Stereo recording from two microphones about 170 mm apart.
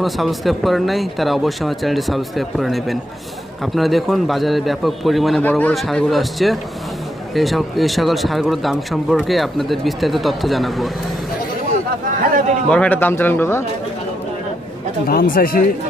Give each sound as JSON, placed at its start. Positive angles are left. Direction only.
{"t": 0.0, "sound": "speech", "side_deg": 0}
{"t": 12.3, "sound": "a man's voice", "side_deg": -55}
{"t": 12.6, "sound": "speech", "side_deg": 5}
{"t": 15.0, "sound": "speech", "side_deg": 60}